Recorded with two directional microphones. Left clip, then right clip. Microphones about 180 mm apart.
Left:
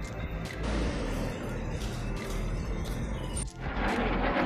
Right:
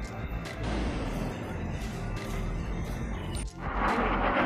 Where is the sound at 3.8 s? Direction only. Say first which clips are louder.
Right 3 dB; 50° left (ahead or behind).